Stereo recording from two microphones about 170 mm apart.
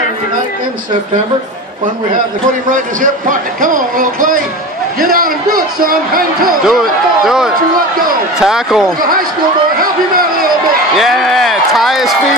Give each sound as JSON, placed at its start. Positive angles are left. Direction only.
{"t": 2.7, "sound": "a man's voice", "side_deg": -50}
{"t": 6.7, "sound": "a man's voice", "side_deg": 0}
{"t": 9.8, "sound": "a sound", "side_deg": -55}
{"t": 11.0, "sound": "a man's voice", "side_deg": 0}